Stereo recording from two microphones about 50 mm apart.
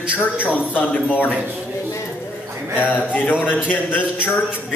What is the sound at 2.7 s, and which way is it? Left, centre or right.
A man's voice, left.